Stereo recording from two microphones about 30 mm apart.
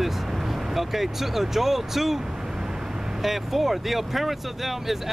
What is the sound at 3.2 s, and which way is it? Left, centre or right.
Speech, centre.